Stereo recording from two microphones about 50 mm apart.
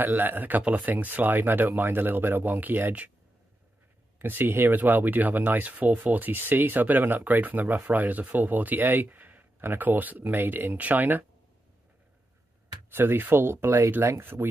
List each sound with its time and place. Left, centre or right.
0.0 s speech: right
4.2 s speech: right
10.8 s speech: right
12.9 s speech: right